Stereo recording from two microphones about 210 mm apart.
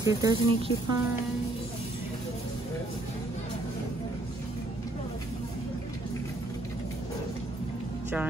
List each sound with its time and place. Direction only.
0.0 s speech: 20° right (ahead or behind)